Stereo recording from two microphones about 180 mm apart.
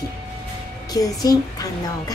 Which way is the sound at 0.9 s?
20° left (ahead or behind).